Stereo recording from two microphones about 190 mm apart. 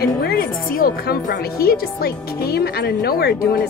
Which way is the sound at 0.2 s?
55° left (ahead or behind).